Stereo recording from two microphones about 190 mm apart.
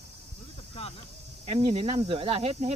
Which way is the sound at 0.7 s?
30° left (ahead or behind).